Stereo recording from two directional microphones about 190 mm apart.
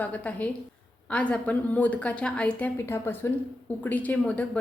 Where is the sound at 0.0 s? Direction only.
10° left (ahead or behind).